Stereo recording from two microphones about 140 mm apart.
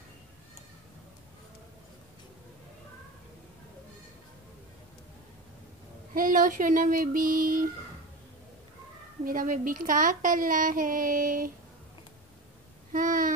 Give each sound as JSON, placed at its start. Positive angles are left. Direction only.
{"t": 6.1, "sound": "child singing", "side_deg": -75}
{"t": 9.2, "sound": "a woman's voice", "side_deg": -80}
{"t": 12.9, "sound": "a sound", "side_deg": -75}